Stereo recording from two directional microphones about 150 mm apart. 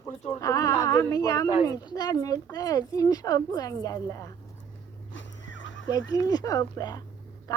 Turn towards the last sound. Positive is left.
turn(degrees=25)  # may be behind; listen again after turning